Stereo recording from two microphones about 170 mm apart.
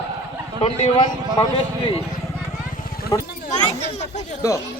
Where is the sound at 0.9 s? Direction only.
30° left (ahead or behind).